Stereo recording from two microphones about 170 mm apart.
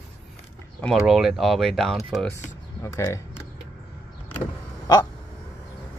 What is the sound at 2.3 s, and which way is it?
Speech, 15° left (ahead or behind).